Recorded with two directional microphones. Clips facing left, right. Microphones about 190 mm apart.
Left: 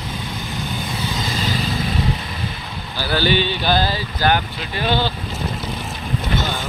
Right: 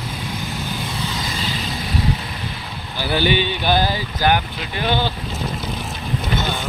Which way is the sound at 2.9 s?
20° right (ahead or behind).